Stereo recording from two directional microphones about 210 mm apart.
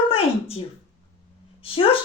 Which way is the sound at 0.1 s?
30° left (ahead or behind).